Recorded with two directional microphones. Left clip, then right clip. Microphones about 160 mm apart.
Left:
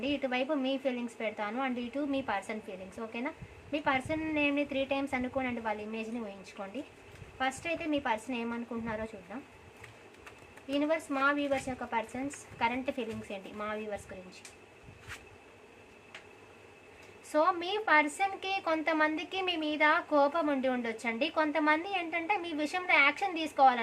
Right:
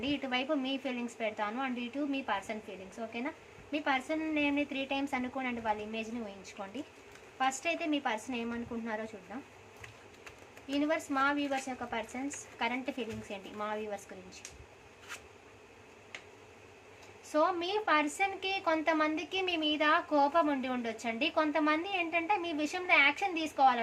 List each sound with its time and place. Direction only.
0.0 s a woman's voice: 15° left (ahead or behind)
10.7 s a woman's voice: 10° left (ahead or behind)
17.3 s a woman's voice: 15° left (ahead or behind)